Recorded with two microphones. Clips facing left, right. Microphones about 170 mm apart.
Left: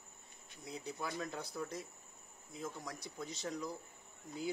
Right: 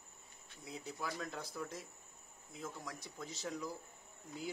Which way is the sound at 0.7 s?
Centre (ahead or behind).